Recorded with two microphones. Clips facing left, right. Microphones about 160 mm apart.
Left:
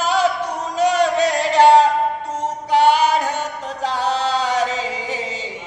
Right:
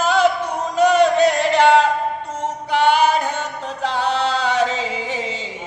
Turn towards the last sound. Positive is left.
turn(degrees=40)  # may be behind; listen again after turning